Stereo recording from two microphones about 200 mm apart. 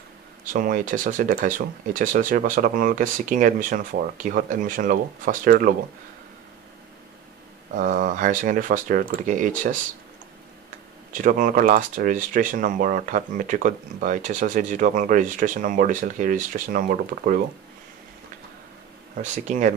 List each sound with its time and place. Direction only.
0.5 s speech: 45° right (ahead or behind)
7.7 s speech: 40° right (ahead or behind)
11.1 s speech: 40° right (ahead or behind)
19.4 s speech: 35° right (ahead or behind)